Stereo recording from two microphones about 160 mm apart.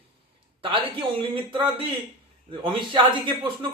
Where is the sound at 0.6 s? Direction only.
35° right (ahead or behind).